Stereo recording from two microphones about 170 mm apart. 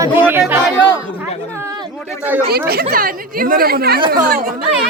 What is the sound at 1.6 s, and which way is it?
Chatter, 20° right (ahead or behind).